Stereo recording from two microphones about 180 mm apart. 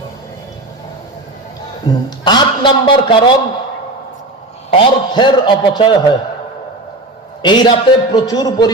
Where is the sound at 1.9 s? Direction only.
20° left (ahead or behind).